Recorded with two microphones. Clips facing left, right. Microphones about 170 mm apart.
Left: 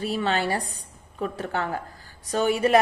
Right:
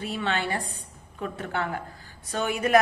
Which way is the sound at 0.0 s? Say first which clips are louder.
Left 4 dB; 35° left (ahead or behind).